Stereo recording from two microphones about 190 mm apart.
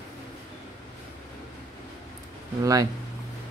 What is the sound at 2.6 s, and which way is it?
Speech, 20° right (ahead or behind).